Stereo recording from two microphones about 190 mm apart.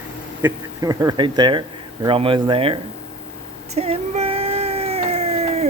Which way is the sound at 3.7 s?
35° right (ahead or behind).